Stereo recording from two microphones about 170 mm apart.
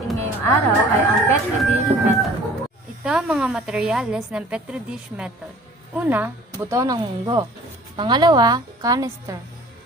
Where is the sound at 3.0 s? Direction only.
5° right (ahead or behind).